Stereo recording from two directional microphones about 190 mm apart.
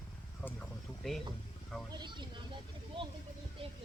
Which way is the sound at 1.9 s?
25° right (ahead or behind).